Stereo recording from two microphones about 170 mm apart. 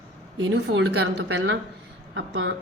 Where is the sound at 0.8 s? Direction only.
90° right.